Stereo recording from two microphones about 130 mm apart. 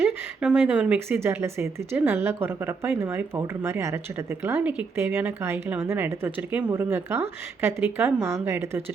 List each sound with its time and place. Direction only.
0.0 s a woman's voice: 10° right (ahead or behind)